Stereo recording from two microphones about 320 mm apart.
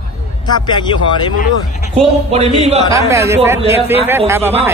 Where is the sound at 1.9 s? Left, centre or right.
Centre.